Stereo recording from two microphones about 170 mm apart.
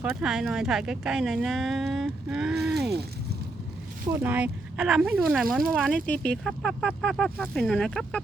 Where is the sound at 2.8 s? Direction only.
75° right (ahead or behind).